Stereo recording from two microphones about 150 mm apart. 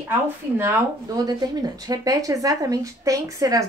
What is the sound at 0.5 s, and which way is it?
Speech, 20° right (ahead or behind).